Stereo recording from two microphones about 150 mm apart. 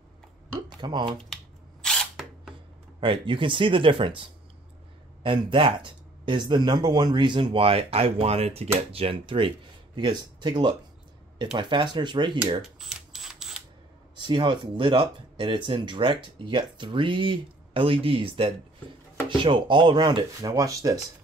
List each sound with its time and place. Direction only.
0.7 s a sound: 30° right (ahead or behind)
1.3 s camera: 5° left (ahead or behind)
3.0 s speech: 35° right (ahead or behind)
12.4 s camera: 5° right (ahead or behind)
14.1 s speech: 30° right (ahead or behind)